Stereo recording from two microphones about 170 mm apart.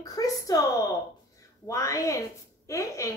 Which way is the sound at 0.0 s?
20° left (ahead or behind).